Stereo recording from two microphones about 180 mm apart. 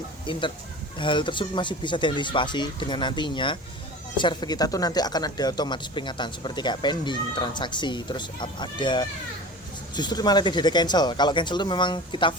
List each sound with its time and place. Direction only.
0.3 s speech: 25° left (ahead or behind)